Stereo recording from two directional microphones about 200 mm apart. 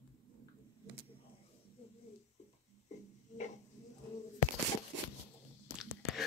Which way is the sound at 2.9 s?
35° left (ahead or behind).